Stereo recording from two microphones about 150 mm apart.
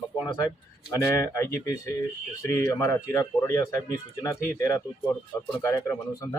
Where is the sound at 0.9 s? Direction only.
20° left (ahead or behind).